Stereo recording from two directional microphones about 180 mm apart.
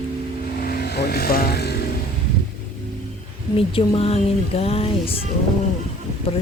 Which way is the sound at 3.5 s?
30° left (ahead or behind).